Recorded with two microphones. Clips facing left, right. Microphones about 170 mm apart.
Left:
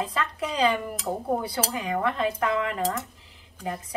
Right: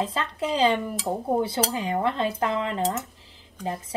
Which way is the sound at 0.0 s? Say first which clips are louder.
Right 2 dB; 30° right (ahead or behind).